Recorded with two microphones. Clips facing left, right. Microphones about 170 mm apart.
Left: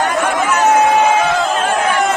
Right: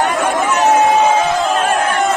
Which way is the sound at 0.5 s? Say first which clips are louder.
Even; 20° right (ahead or behind).